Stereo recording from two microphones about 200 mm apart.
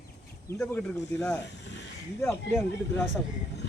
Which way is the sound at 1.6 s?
60° left (ahead or behind).